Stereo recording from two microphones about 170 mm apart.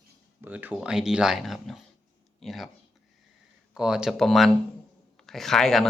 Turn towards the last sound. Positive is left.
turn(degrees=0)  # may be behind; listen again after turning